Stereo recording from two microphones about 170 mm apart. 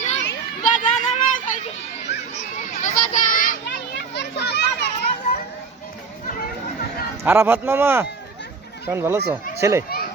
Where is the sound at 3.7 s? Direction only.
90° left.